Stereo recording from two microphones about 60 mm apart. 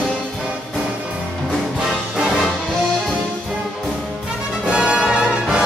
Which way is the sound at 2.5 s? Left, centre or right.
Centre.